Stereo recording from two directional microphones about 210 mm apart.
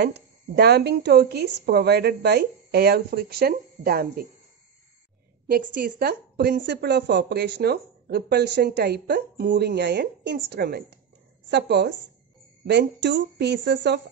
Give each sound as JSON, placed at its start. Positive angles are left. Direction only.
{"t": 0.0, "sound": "speech", "side_deg": -50}
{"t": 5.8, "sound": "speech", "side_deg": -50}